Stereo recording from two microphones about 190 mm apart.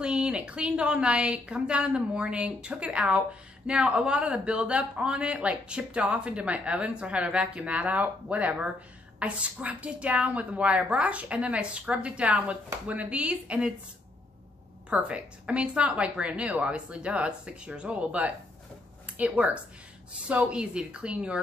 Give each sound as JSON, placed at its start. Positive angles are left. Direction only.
{"t": 0.0, "sound": "a man's voice", "side_deg": -5}
{"t": 14.9, "sound": "a woman's voice", "side_deg": -5}